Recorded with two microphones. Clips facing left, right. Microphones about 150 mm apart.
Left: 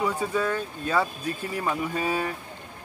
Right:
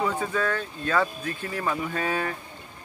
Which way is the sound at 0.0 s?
10° left (ahead or behind).